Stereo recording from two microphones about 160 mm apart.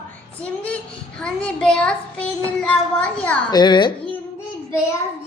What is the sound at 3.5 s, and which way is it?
Speech, 25° left (ahead or behind).